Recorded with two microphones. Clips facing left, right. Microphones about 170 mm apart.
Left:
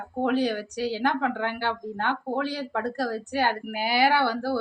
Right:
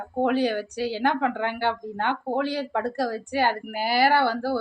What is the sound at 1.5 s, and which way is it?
Speech, 55° right (ahead or behind).